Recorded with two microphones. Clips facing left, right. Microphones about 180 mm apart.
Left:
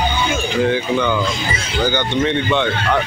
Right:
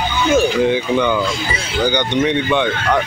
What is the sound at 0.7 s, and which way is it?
Speech, 15° right (ahead or behind).